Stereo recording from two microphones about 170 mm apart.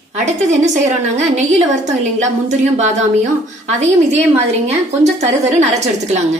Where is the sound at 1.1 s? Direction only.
40° right (ahead or behind).